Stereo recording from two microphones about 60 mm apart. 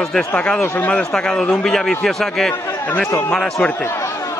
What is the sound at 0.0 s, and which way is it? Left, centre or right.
A man's voice, centre.